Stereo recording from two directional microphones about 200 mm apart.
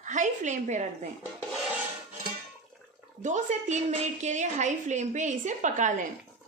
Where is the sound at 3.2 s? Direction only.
35° right (ahead or behind).